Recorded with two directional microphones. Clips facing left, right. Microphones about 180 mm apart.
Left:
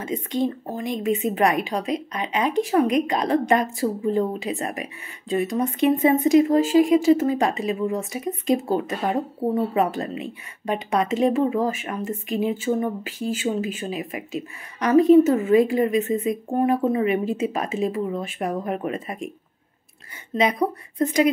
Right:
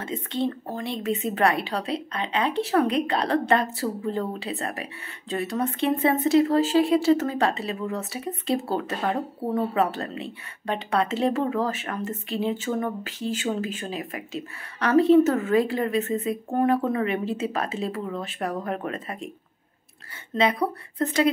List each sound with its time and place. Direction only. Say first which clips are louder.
0.0 s speech: left 3 dB; 15° left (ahead or behind)
20.3 s speech: left 2 dB; 15° left (ahead or behind)